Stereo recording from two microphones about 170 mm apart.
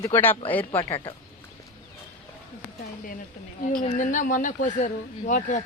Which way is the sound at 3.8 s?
50° left (ahead or behind).